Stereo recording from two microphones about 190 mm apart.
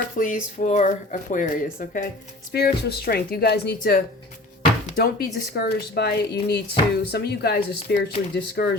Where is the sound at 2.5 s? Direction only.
55° left (ahead or behind).